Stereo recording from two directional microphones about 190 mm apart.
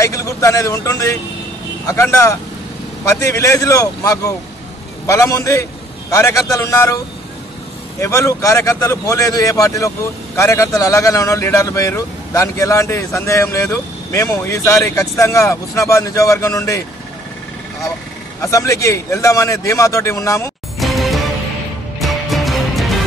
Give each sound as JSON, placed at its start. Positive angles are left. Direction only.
{"t": 0.0, "sound": "a man's voice", "side_deg": 15}
{"t": 8.0, "sound": "a man's voice", "side_deg": 15}
{"t": 18.4, "sound": "a man's voice", "side_deg": 15}
{"t": 20.8, "sound": "music", "side_deg": 0}